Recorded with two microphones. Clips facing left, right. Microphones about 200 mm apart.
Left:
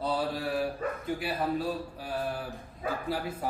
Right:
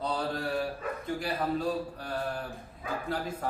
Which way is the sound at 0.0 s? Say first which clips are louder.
Left 1 dB; 5° left (ahead or behind).